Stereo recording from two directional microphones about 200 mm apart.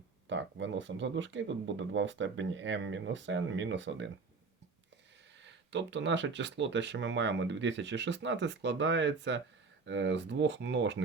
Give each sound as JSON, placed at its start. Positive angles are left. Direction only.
{"t": 0.3, "sound": "speech", "side_deg": -65}
{"t": 5.5, "sound": "speech", "side_deg": -60}